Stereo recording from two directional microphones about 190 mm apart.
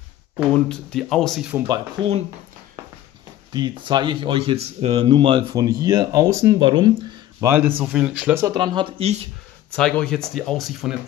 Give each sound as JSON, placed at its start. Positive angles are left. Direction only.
{"t": 0.5, "sound": "speech", "side_deg": 5}
{"t": 1.7, "sound": "speech", "side_deg": -30}
{"t": 3.5, "sound": "speech", "side_deg": -25}
{"t": 7.4, "sound": "speech", "side_deg": -10}
{"t": 8.5, "sound": "speech", "side_deg": -25}
{"t": 9.7, "sound": "speech", "side_deg": 5}